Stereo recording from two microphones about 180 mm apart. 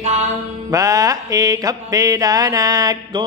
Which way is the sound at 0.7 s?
20° right (ahead or behind).